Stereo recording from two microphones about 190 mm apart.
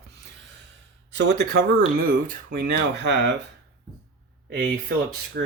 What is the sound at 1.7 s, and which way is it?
Speech, 45° right (ahead or behind).